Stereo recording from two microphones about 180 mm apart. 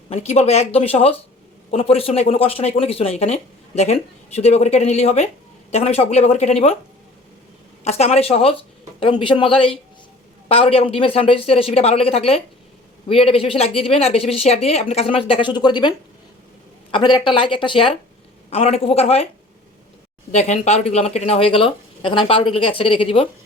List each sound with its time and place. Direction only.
0.1 s speech: 35° left (ahead or behind)
7.9 s speech: 35° left (ahead or behind)
20.3 s speech: 40° left (ahead or behind)